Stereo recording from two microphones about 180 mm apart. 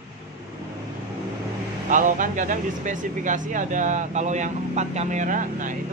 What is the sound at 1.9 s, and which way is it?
Speech, 45° right (ahead or behind).